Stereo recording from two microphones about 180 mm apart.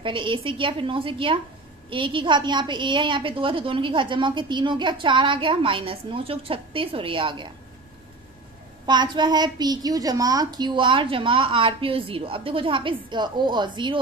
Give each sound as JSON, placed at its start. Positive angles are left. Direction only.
{"t": 0.0, "sound": "a woman's voice", "side_deg": -30}
{"t": 8.8, "sound": "a woman's voice", "side_deg": -25}